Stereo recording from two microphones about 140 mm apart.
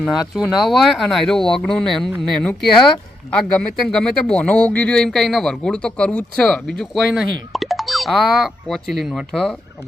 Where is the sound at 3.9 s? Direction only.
5° left (ahead or behind).